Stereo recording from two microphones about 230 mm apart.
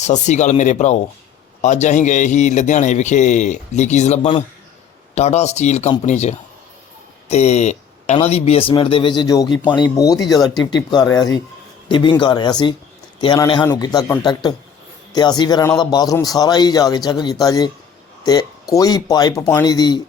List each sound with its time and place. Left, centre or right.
0.0 s a man's voice: left
18.2 s a sound: centre
18.7 s a man's voice: centre